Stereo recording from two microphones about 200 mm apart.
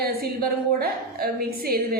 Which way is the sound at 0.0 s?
50° right (ahead or behind).